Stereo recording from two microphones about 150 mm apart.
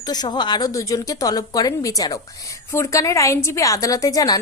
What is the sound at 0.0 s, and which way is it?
A woman's voice, 25° left (ahead or behind).